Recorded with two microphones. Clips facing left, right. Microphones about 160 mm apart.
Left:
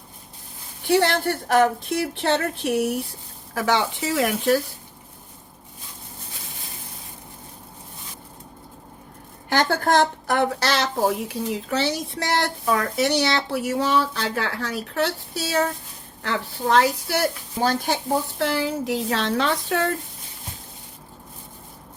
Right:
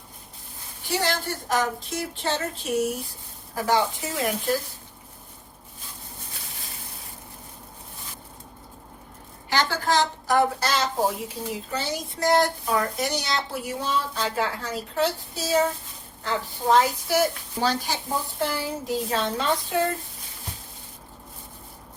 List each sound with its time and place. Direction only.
0.9 s speech: 60° left (ahead or behind)
3.5 s speech: 80° left
9.5 s a woman's voice: 50° left (ahead or behind); by 17.2 s 75° left (ahead or behind)
17.6 s speech: 50° left (ahead or behind); by 19.9 s 80° left